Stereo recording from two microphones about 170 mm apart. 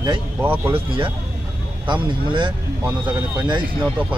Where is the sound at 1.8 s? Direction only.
30° right (ahead or behind).